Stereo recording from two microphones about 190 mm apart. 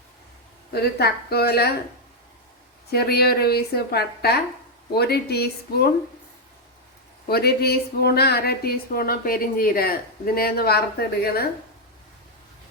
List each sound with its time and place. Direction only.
0.7 s speech: 55° left (ahead or behind)
2.9 s speech: 55° left (ahead or behind)
7.3 s speech: 55° left (ahead or behind)